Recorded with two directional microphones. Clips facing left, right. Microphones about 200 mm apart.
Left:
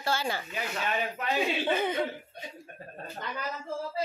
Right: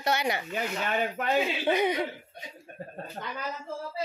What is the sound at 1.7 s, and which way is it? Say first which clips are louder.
Speech: right 5 dB; 15° right (ahead or behind).